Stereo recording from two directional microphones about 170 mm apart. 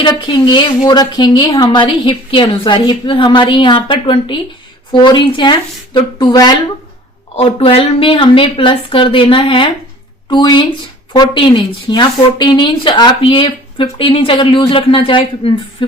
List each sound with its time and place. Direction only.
0.0 s a woman's voice: 25° left (ahead or behind)